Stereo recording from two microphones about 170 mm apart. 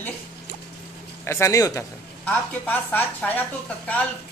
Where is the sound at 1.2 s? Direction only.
15° left (ahead or behind).